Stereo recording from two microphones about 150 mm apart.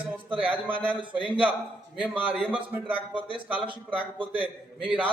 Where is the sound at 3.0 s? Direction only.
35° right (ahead or behind).